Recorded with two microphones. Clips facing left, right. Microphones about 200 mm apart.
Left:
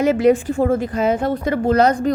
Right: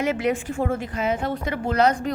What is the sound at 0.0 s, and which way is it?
A woman's voice, 35° left (ahead or behind).